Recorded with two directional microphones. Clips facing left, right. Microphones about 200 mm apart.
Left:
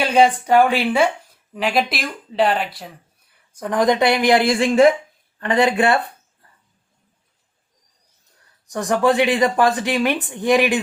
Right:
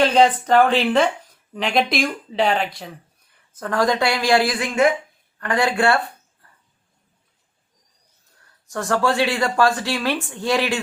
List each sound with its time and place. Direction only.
0.0 s speech: 10° left (ahead or behind)
3.5 s speech: 15° left (ahead or behind)
8.7 s speech: 15° left (ahead or behind)